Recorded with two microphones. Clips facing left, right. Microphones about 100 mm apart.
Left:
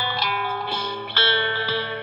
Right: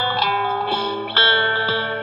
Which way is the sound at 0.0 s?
35° right (ahead or behind).